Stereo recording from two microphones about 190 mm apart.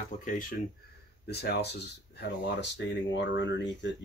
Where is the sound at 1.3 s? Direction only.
60° left (ahead or behind).